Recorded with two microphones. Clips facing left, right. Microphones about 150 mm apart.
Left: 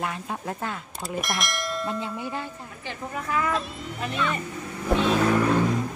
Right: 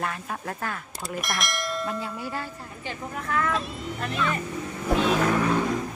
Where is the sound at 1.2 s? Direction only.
Centre (ahead or behind).